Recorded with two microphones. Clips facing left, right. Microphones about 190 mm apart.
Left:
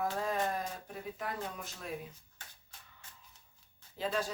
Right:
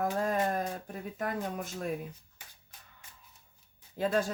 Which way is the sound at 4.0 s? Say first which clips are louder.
Right 6 dB; 50° right (ahead or behind).